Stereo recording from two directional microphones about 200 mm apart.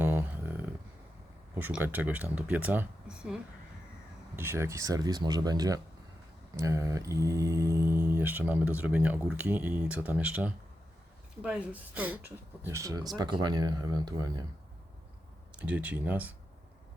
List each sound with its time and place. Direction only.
0.0 s a sound: 10° right (ahead or behind)
1.5 s speech: 10° right (ahead or behind)
4.4 s speech: 10° right (ahead or behind)
15.5 s speech: 5° right (ahead or behind)